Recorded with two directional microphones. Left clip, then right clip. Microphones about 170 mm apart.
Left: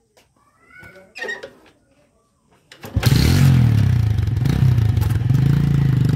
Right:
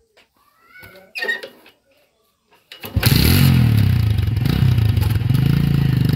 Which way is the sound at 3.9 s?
15° left (ahead or behind).